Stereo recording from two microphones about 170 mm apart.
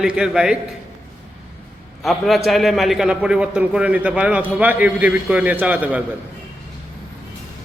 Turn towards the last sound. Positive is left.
turn(degrees=-10)  # may be behind; listen again after turning